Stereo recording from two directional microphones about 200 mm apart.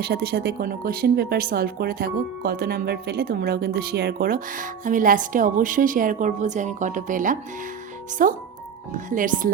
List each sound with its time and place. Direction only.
0.0 s speech: 50° right (ahead or behind)